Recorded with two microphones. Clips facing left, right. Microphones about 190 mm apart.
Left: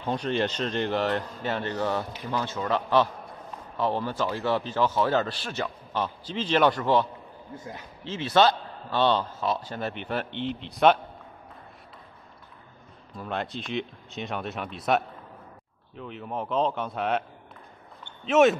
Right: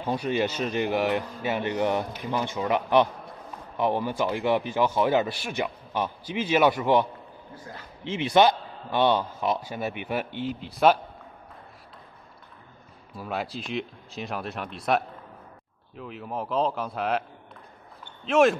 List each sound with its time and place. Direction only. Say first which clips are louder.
0.0 s a man's voice: right 1 dB; 10° right (ahead or behind)
7.5 s a man's voice: left 3 dB; 25° left (ahead or behind)
8.0 s a man's voice: right 2 dB; 15° right (ahead or behind)
13.1 s speech: even; 5° right (ahead or behind)
18.2 s speech: left 1 dB; centre (ahead or behind)